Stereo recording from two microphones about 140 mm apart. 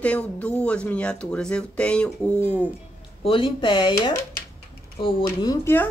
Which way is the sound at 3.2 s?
35° left (ahead or behind).